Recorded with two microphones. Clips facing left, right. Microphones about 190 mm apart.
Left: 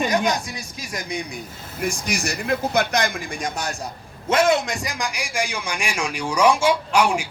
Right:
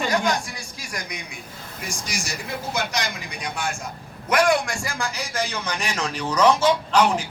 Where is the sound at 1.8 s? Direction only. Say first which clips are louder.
Left 8 dB; 60° left (ahead or behind); by 3.7 s 45° left (ahead or behind).